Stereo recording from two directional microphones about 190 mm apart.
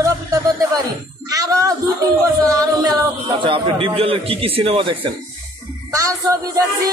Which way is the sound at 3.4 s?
25° right (ahead or behind).